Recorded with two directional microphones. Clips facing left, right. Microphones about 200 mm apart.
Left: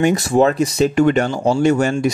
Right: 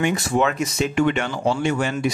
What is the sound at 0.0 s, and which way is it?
Speech, 40° left (ahead or behind).